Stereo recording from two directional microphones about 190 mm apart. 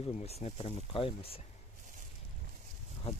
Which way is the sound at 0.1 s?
35° left (ahead or behind).